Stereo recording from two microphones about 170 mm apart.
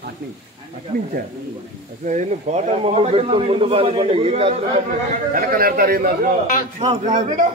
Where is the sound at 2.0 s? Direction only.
45° right (ahead or behind).